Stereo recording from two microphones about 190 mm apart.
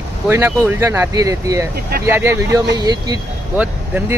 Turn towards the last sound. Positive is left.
turn(degrees=-10)  # may be behind; listen again after turning